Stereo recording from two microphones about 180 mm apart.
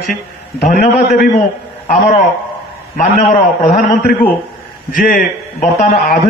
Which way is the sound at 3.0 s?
40° left (ahead or behind).